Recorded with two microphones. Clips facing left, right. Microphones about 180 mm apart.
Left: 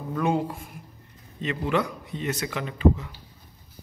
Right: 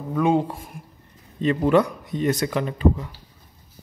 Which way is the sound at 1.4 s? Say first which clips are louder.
Right 8 dB; 40° right (ahead or behind).